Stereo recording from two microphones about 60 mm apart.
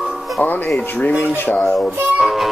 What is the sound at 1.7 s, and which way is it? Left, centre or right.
Child singing, centre.